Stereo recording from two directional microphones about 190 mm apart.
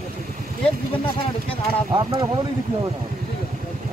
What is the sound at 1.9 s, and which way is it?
Speech, 20° right (ahead or behind).